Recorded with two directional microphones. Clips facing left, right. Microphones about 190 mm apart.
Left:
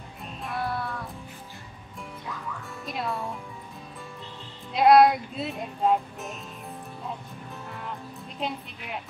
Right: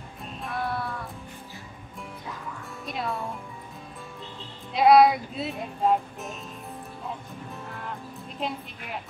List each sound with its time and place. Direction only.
0.2 s music: centre (ahead or behind)
2.8 s speech: centre (ahead or behind)
4.7 s speech: centre (ahead or behind)
8.4 s speech: centre (ahead or behind)